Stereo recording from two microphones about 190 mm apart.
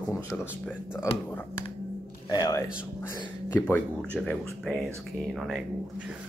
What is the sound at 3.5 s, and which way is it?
Speech, 10° left (ahead or behind).